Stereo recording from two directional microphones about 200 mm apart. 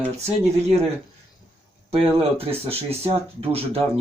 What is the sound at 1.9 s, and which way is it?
Speech, 30° right (ahead or behind).